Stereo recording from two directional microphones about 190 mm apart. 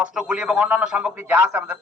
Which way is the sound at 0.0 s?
5° right (ahead or behind).